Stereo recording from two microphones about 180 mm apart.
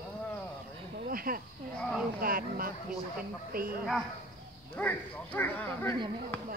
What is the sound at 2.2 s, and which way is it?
Speech, 55° right (ahead or behind).